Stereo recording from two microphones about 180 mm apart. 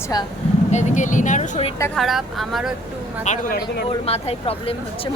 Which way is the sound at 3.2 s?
45° left (ahead or behind).